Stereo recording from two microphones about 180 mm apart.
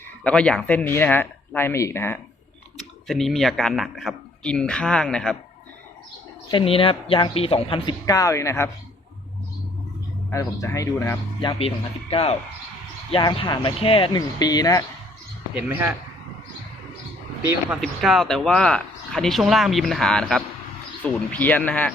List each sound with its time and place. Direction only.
0.3 s speech: 5° left (ahead or behind)
3.1 s speech: centre (ahead or behind)
6.5 s speech: 30° left (ahead or behind)
8.0 s speech: 20° left (ahead or behind)
10.3 s speech: 15° left (ahead or behind)
15.5 s speech: 5° right (ahead or behind)
17.7 s speech: centre (ahead or behind)